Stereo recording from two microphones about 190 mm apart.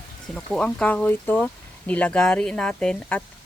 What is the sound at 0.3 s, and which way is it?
Speech, 5° left (ahead or behind).